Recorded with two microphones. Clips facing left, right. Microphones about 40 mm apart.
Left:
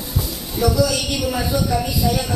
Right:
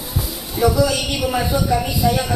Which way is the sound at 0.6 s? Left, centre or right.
Centre.